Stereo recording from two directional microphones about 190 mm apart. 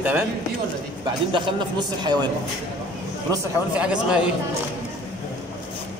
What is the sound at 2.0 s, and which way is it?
Speech, 20° right (ahead or behind).